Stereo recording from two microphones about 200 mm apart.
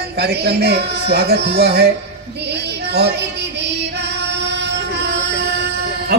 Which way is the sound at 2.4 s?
55° right (ahead or behind).